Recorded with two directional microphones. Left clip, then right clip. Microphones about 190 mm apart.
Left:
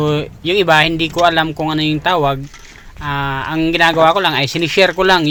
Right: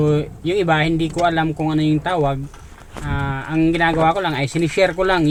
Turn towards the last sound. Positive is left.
turn(degrees=30)  # may be behind; listen again after turning